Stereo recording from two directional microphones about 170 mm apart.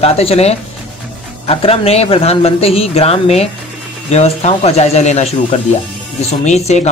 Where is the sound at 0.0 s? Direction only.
35° left (ahead or behind).